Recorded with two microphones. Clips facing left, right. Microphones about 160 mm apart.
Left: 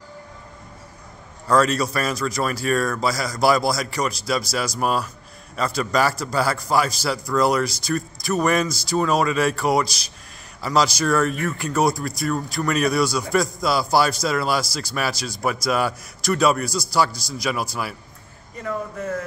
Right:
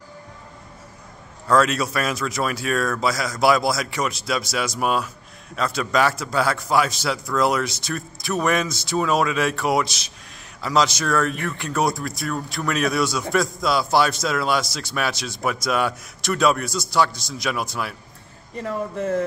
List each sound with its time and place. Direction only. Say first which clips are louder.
1.5 s speech: even; centre (ahead or behind)
18.6 s speech: right 2 dB; 30° right (ahead or behind)